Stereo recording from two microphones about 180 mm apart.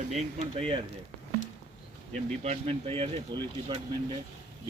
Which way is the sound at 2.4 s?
35° right (ahead or behind).